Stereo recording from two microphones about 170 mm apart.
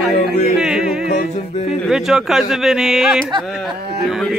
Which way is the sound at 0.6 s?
5° right (ahead or behind).